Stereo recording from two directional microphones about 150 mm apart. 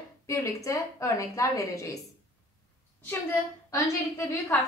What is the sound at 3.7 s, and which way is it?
Speech, 20° left (ahead or behind).